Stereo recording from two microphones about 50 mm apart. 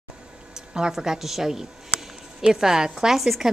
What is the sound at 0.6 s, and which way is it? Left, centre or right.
A woman's voice, centre.